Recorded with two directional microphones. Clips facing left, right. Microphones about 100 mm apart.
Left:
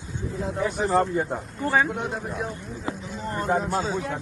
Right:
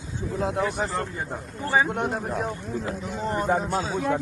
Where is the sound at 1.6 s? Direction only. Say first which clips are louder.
Even; centre (ahead or behind).